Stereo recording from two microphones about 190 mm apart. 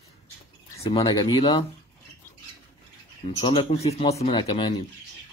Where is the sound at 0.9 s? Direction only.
25° left (ahead or behind).